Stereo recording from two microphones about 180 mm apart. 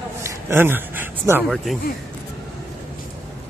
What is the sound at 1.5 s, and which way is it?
Speech, centre (ahead or behind).